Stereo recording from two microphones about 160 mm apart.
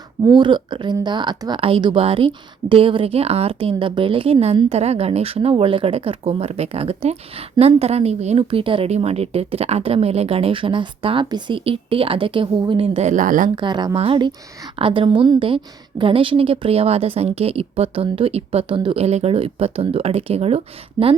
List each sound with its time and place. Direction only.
0.3 s a woman's voice: 30° right (ahead or behind); by 13.5 s 55° right (ahead or behind)
13.6 s a woman's voice: 25° right (ahead or behind)